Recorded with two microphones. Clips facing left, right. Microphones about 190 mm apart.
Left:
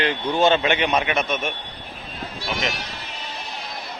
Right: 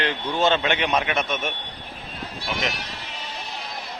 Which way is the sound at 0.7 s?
5° left (ahead or behind).